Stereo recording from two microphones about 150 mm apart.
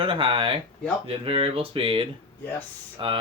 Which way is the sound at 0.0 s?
35° right (ahead or behind).